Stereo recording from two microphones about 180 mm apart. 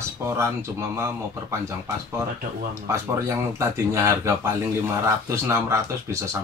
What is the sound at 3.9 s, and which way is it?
Speech, 15° right (ahead or behind).